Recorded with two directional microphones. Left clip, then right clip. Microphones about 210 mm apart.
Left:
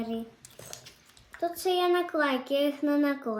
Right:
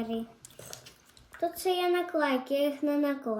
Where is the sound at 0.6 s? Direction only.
Centre (ahead or behind).